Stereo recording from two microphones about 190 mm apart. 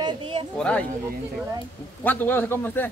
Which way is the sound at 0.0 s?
25° right (ahead or behind).